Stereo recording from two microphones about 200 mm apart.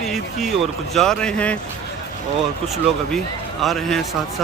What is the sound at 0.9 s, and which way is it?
Speech, 5° left (ahead or behind).